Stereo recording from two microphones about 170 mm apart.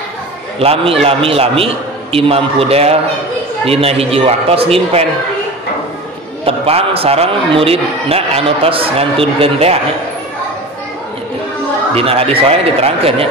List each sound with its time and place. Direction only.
0.6 s a man's voice: 35° right (ahead or behind)
6.4 s a man's voice: 35° right (ahead or behind)
11.9 s a man's voice: 35° right (ahead or behind)